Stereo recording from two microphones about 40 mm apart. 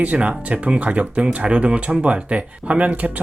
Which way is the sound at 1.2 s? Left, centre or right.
Right.